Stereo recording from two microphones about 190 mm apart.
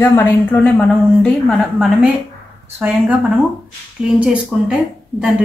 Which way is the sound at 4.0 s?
5° right (ahead or behind).